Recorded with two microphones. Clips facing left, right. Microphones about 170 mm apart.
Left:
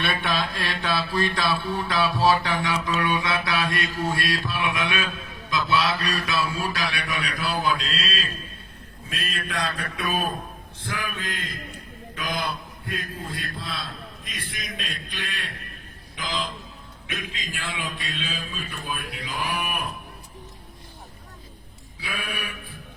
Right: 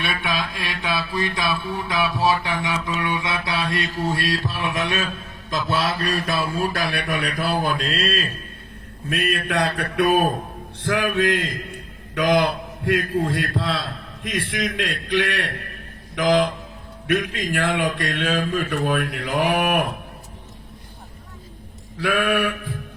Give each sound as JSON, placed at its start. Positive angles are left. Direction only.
{"t": 0.0, "sound": "mantra", "side_deg": 0}
{"t": 0.3, "sound": "mantra", "side_deg": -15}
{"t": 5.5, "sound": "a sound", "side_deg": -45}
{"t": 9.0, "sound": "a man's voice", "side_deg": -65}
{"t": 21.9, "sound": "sheep", "side_deg": -90}